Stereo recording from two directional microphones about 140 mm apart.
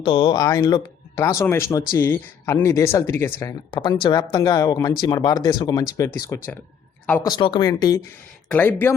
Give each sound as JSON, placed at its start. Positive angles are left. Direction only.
{"t": 0.0, "sound": "speech", "side_deg": 35}
{"t": 3.7, "sound": "speech", "side_deg": 35}
{"t": 7.3, "sound": "speech", "side_deg": 35}
{"t": 8.4, "sound": "speech", "side_deg": 15}